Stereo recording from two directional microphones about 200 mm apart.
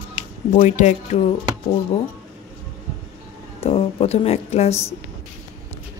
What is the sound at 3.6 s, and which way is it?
Speech, 30° left (ahead or behind).